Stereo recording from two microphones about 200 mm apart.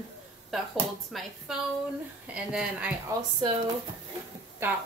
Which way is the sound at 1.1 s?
Centre (ahead or behind).